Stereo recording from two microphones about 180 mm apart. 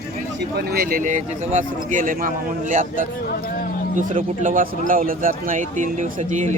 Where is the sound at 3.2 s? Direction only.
60° left (ahead or behind).